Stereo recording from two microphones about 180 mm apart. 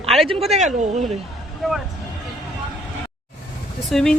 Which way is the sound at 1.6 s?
Centre (ahead or behind).